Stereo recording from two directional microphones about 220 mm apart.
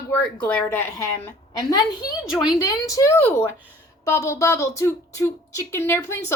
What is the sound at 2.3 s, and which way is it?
Speech, 5° right (ahead or behind).